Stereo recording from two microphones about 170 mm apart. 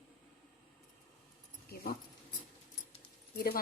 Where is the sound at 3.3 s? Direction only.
65° left (ahead or behind).